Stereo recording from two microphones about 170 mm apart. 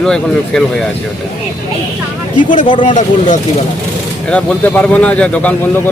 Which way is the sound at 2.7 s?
30° left (ahead or behind).